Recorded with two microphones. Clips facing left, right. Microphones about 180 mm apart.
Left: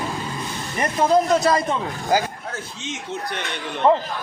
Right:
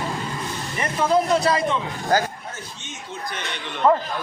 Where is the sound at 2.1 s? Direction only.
10° left (ahead or behind).